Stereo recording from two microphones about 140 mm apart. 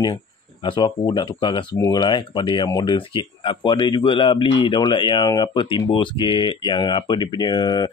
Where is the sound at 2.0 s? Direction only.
35° left (ahead or behind).